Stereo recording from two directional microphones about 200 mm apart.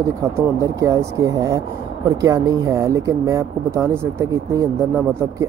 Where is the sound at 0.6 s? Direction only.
15° right (ahead or behind).